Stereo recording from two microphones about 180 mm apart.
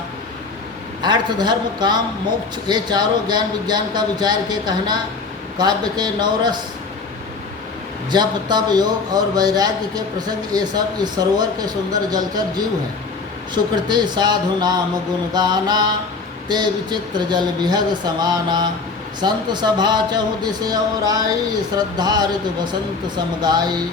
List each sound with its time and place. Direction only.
1.0 s a man's voice: 25° right (ahead or behind)
8.1 s a man's voice: 25° right (ahead or behind)
13.5 s a man's voice: 25° right (ahead or behind)